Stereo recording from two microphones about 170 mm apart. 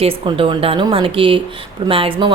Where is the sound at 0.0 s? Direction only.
35° right (ahead or behind).